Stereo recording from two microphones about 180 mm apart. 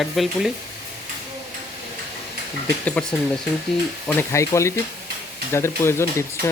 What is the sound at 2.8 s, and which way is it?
Speech, 5° left (ahead or behind).